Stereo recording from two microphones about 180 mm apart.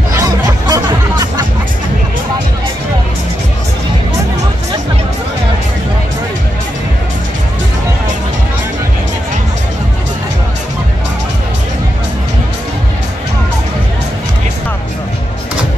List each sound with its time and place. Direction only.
0.1 s music: 20° right (ahead or behind)